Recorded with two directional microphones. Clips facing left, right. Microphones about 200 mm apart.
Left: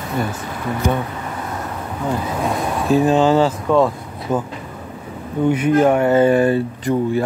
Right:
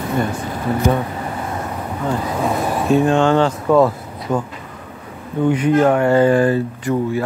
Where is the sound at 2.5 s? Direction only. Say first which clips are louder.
Right 1 dB; centre (ahead or behind).